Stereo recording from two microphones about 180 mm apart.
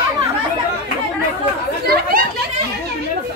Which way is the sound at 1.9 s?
55° right (ahead or behind).